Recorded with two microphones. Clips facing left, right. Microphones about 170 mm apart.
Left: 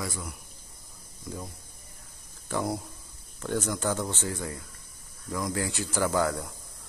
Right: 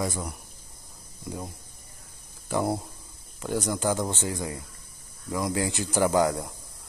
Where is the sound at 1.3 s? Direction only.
20° right (ahead or behind).